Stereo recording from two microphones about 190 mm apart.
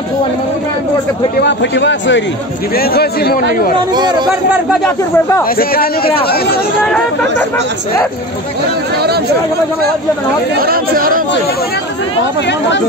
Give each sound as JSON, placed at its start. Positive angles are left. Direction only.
{"t": 1.4, "sound": "a man's voice", "side_deg": 65}
{"t": 2.7, "sound": "speech", "side_deg": 55}
{"t": 3.9, "sound": "speech", "side_deg": -25}
{"t": 4.8, "sound": "speech", "side_deg": 15}
{"t": 5.6, "sound": "speech", "side_deg": 50}
{"t": 6.8, "sound": "speech", "side_deg": 5}
{"t": 8.9, "sound": "chatter", "side_deg": -55}
{"t": 10.6, "sound": "speech", "side_deg": -50}
{"t": 12.4, "sound": "a man's voice", "side_deg": 65}